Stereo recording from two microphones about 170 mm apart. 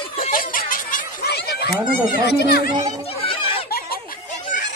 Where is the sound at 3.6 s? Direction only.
65° left (ahead or behind).